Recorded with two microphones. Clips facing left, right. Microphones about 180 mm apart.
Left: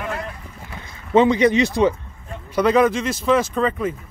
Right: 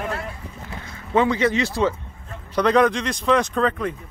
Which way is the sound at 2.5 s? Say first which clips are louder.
Left 1 dB; 5° left (ahead or behind).